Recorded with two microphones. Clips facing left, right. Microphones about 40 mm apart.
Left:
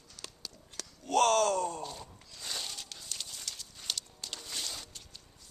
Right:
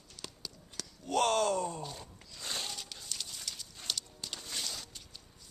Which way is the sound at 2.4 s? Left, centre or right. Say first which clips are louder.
Right 1 dB; centre.